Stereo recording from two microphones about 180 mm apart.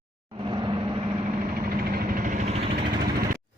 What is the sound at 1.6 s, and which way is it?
Vehicle, 55° right (ahead or behind).